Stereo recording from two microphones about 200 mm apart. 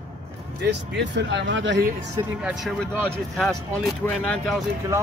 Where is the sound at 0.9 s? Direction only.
60° right (ahead or behind).